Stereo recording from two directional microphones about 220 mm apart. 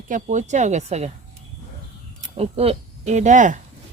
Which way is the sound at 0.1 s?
35° right (ahead or behind).